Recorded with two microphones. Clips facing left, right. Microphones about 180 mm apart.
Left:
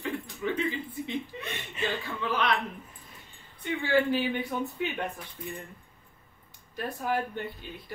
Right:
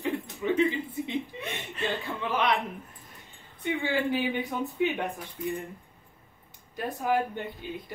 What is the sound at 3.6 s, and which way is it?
Speech, 20° right (ahead or behind).